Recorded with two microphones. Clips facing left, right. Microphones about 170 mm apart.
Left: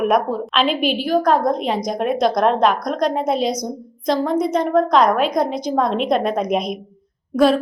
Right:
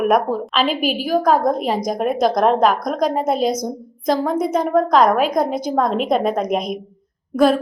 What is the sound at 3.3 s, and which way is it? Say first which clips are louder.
Speech: right 1 dB; 50° right (ahead or behind).